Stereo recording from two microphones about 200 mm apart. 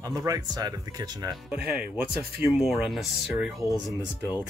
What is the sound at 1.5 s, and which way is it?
Speech, 5° right (ahead or behind).